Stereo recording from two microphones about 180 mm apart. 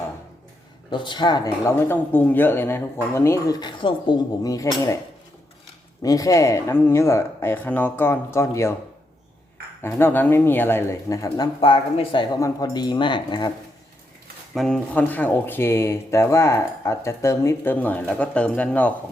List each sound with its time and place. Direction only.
0.9 s speech: 25° left (ahead or behind)
6.0 s speech: 20° left (ahead or behind)
9.8 s speech: 10° left (ahead or behind)
14.5 s speech: 5° left (ahead or behind)